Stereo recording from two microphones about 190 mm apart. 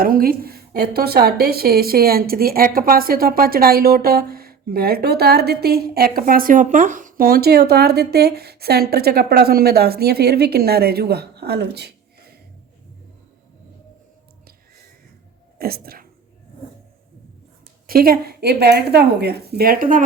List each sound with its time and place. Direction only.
0.0 s a woman's voice: 50° right (ahead or behind)
15.5 s speech: 55° right (ahead or behind)
17.8 s speech: 50° right (ahead or behind)